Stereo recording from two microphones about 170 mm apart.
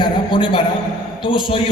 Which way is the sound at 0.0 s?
30° left (ahead or behind).